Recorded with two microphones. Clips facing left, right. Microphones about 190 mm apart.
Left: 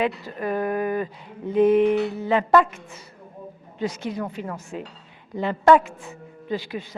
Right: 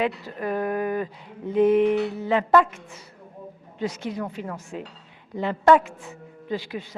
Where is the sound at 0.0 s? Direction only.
15° left (ahead or behind).